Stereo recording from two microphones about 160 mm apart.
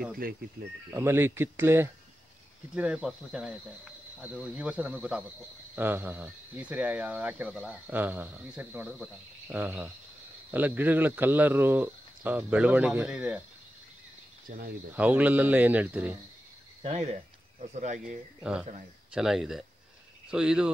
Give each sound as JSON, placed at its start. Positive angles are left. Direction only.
{"t": 0.9, "sound": "speech", "side_deg": -15}
{"t": 14.5, "sound": "speech", "side_deg": -55}
{"t": 15.0, "sound": "speech", "side_deg": -10}
{"t": 16.8, "sound": "speech", "side_deg": -45}
{"t": 18.4, "sound": "speech", "side_deg": -5}